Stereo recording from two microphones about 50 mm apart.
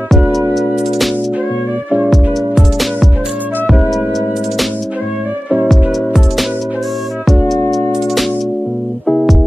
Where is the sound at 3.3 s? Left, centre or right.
Right.